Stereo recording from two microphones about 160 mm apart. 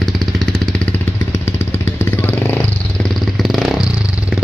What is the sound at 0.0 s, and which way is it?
Vehicle, centre (ahead or behind).